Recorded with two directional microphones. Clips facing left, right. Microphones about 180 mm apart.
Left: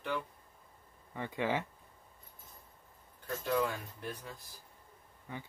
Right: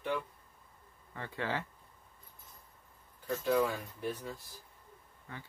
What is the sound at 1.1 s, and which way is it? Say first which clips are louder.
Speech: left 3 dB; 15° left (ahead or behind).